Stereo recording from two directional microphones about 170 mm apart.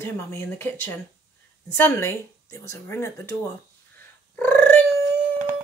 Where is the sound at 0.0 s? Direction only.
15° left (ahead or behind).